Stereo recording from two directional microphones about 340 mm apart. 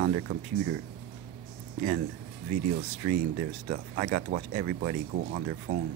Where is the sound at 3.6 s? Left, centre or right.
Right.